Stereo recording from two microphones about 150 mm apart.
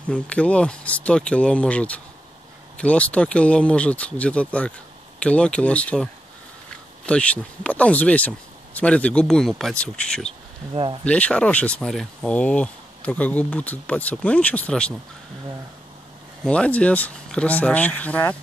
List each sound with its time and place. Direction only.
0.1 s speech: 10° left (ahead or behind)
7.1 s speech: 10° left (ahead or behind)
10.7 s speech: 35° right (ahead or behind)
11.1 s speech: 10° left (ahead or behind)
16.4 s speech: 5° left (ahead or behind)